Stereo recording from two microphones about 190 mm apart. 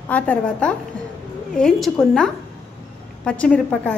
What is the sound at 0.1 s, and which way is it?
A woman's voice, 5° left (ahead or behind).